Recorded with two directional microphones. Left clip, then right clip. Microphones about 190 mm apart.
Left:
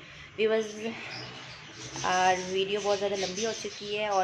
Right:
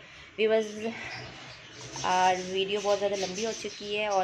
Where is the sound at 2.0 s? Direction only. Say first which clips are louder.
Even; centre (ahead or behind).